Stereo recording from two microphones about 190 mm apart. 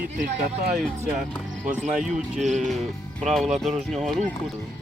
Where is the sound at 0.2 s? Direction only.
40° right (ahead or behind).